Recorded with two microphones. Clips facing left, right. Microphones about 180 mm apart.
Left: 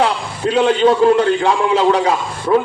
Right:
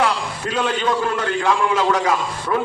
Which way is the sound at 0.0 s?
30° left (ahead or behind).